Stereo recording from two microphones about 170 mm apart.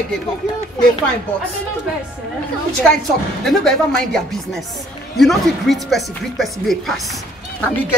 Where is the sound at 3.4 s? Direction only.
Centre (ahead or behind).